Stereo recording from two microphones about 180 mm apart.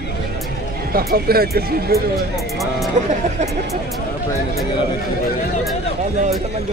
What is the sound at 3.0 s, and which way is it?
Speech, 40° right (ahead or behind).